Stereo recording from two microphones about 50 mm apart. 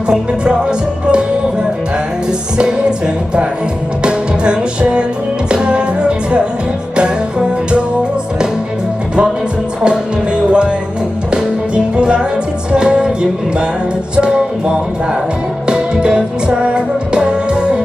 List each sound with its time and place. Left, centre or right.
0.1 s music: centre
2.6 s music: centre
4.0 s music: right
9.8 s music: centre
14.2 s music: centre